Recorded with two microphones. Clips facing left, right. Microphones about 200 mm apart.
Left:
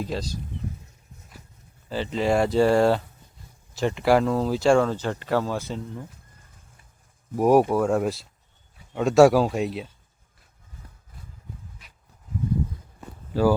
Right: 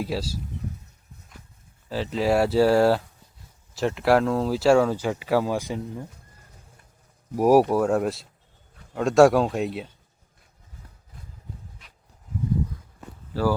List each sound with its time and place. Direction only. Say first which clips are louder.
0.0 s speech: right 1 dB; 5° right (ahead or behind)
1.9 s speech: even; centre (ahead or behind)
7.3 s speech: right 1 dB; 5° right (ahead or behind)
13.3 s speech: left 3 dB; 15° left (ahead or behind)